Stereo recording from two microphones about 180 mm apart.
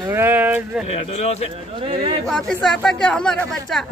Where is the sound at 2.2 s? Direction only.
5° left (ahead or behind).